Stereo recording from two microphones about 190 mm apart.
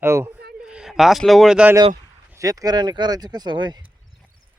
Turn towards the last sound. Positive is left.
turn(degrees=-25)  # may be behind; listen again after turning